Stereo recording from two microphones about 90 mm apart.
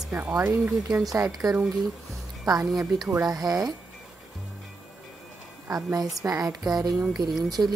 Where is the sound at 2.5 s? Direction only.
40° right (ahead or behind).